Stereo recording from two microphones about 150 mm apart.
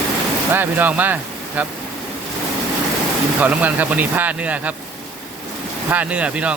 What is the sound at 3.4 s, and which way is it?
Speech, 10° right (ahead or behind).